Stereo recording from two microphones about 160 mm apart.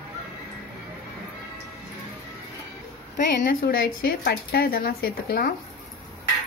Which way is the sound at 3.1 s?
65° left (ahead or behind).